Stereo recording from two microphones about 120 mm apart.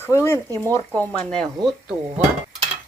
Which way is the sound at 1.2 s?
5° left (ahead or behind).